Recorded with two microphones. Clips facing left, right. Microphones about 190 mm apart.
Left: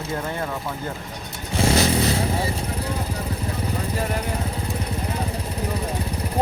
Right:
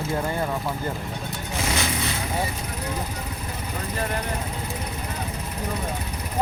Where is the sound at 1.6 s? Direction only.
35° left (ahead or behind).